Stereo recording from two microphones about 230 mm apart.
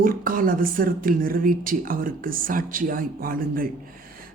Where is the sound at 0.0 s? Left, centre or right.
Right.